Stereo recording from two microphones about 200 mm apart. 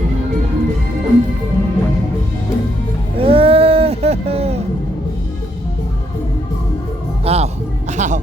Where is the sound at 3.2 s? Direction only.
30° right (ahead or behind).